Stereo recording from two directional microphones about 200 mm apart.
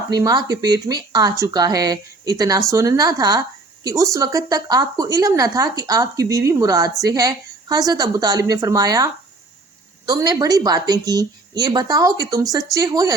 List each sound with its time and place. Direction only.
0.1 s speech: 20° right (ahead or behind)
10.1 s speech: 15° right (ahead or behind)